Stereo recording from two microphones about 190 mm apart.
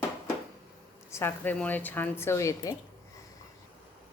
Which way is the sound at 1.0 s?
15° left (ahead or behind).